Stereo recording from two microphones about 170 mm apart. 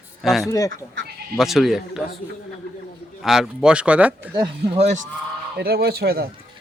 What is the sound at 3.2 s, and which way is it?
Speech, centre (ahead or behind).